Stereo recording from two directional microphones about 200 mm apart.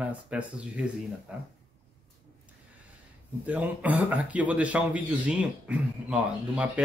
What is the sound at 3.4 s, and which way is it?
A man's voice, 5° right (ahead or behind).